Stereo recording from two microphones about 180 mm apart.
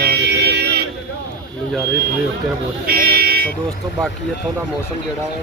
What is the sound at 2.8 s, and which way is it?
Buzzer, 55° right (ahead or behind).